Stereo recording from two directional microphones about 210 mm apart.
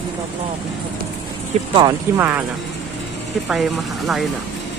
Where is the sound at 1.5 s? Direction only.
30° right (ahead or behind).